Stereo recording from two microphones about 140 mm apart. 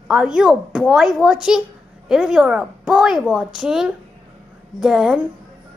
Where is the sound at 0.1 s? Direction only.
5° right (ahead or behind).